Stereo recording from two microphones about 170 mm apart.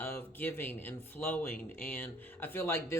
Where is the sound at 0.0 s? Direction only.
10° left (ahead or behind).